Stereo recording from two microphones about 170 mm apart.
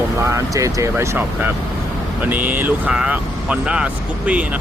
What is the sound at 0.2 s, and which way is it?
Speech, 15° right (ahead or behind).